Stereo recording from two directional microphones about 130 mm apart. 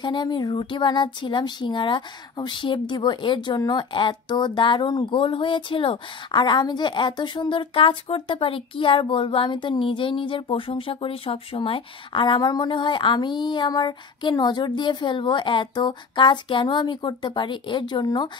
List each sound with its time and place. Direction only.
0.0 s speech: 35° left (ahead or behind)